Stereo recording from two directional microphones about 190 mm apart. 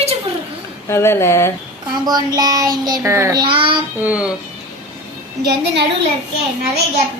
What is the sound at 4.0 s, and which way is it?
Speech, 10° right (ahead or behind).